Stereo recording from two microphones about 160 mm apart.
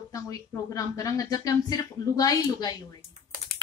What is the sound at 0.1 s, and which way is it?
Speech, 20° left (ahead or behind).